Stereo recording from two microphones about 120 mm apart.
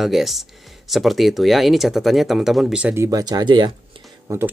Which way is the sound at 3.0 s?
30° right (ahead or behind).